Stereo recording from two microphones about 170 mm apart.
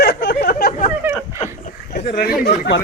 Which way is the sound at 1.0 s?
10° right (ahead or behind).